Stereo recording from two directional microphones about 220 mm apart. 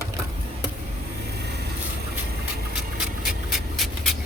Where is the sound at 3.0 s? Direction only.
Centre (ahead or behind).